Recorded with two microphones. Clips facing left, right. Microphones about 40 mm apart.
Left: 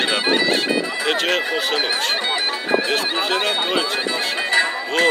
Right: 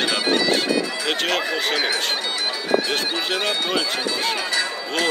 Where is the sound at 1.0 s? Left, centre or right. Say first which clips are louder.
Left 5 dB; centre.